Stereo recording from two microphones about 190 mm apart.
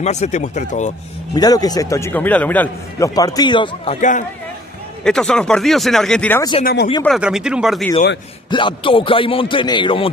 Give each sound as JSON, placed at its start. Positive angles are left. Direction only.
{"t": 0.0, "sound": "speech", "side_deg": 35}
{"t": 1.3, "sound": "a man's voice", "side_deg": 20}
{"t": 3.2, "sound": "speech", "side_deg": 20}
{"t": 5.0, "sound": "speech", "side_deg": 5}
{"t": 6.6, "sound": "speech", "side_deg": 55}
{"t": 7.1, "sound": "speech", "side_deg": -5}
{"t": 8.5, "sound": "speech", "side_deg": 25}